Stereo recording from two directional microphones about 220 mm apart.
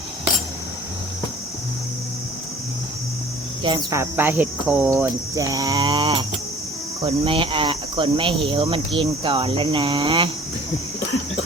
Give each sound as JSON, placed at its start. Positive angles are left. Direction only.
{"t": 3.6, "sound": "cricket", "side_deg": -15}
{"t": 7.0, "sound": "speech", "side_deg": -25}